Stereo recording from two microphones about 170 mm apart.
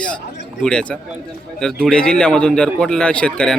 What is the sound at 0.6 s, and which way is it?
A man's voice, 5° left (ahead or behind).